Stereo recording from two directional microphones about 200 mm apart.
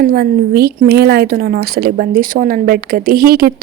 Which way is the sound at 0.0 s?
50° right (ahead or behind).